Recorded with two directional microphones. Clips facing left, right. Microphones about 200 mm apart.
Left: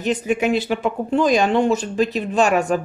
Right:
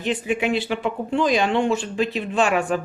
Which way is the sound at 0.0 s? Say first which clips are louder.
Left 3 dB; 40° left (ahead or behind).